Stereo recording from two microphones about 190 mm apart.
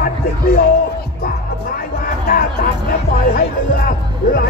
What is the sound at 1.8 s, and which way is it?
Music, 50° left (ahead or behind).